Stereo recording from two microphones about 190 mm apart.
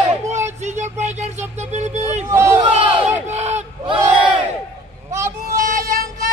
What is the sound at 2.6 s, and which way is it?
Crowd, 30° right (ahead or behind).